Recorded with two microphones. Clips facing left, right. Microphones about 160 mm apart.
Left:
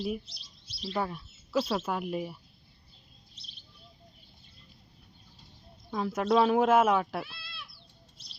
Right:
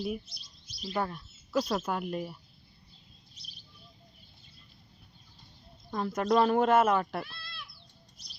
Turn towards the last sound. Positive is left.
turn(degrees=5)  # may be behind; listen again after turning